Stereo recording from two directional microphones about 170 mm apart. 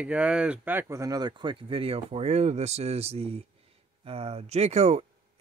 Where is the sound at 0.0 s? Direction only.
5° right (ahead or behind).